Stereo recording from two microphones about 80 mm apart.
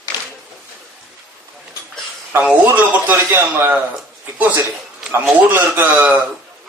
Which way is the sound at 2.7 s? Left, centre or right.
Right.